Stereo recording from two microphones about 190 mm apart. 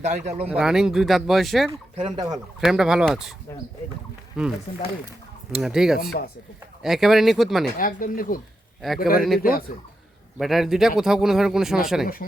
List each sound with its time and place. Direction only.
0.0 s speech: 40° right (ahead or behind)
0.4 s speech: 5° right (ahead or behind)
2.0 s speech: 20° right (ahead or behind)
2.6 s speech: 5° right (ahead or behind)
4.4 s speech: 5° right (ahead or behind)
6.0 s speech: 55° left (ahead or behind)
6.8 s speech: centre (ahead or behind)
7.8 s speech: 45° left (ahead or behind)
10.3 s speech: centre (ahead or behind)